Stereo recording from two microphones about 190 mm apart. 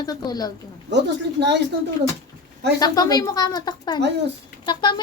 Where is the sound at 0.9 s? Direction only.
65° right (ahead or behind).